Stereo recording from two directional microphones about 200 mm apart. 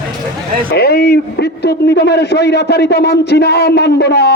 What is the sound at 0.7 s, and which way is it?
A man's voice, 55° left (ahead or behind).